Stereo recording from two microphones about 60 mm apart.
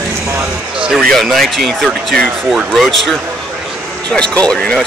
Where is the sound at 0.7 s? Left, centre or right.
Centre.